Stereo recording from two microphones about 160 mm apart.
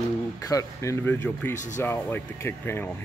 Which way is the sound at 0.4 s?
20° left (ahead or behind).